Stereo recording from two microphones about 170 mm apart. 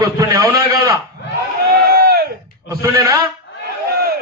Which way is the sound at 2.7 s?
20° right (ahead or behind).